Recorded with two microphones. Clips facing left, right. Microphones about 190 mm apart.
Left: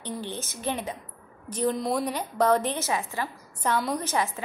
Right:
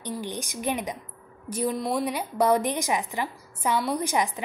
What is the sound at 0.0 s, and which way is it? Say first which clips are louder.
A woman's voice: right 1 dB; 15° right (ahead or behind).